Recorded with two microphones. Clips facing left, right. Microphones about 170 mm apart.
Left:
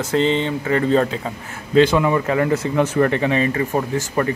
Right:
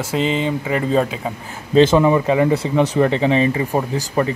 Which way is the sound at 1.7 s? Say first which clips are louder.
Right 2 dB; 25° right (ahead or behind).